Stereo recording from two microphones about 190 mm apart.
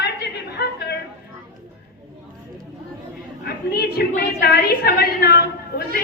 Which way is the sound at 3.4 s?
55° left (ahead or behind).